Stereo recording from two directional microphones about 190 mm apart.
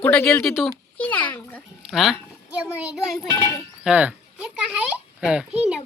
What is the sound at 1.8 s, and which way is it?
A child's voice, centre (ahead or behind).